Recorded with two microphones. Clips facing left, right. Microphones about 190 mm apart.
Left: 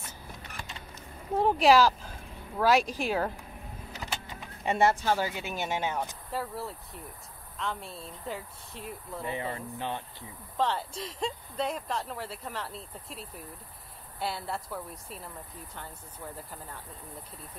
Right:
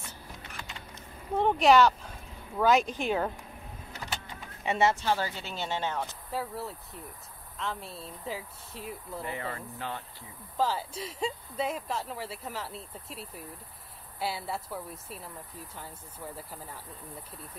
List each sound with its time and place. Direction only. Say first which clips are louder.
1.3 s speech: even; 5° left (ahead or behind)
4.7 s speech: left 1 dB; 15° left (ahead or behind)
6.3 s speech: even; centre (ahead or behind)
9.2 s speech: left 3 dB; 20° left (ahead or behind)
10.6 s speech: even; 5° right (ahead or behind)